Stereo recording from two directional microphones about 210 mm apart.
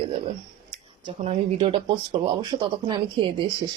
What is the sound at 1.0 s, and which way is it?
Speech, 30° right (ahead or behind).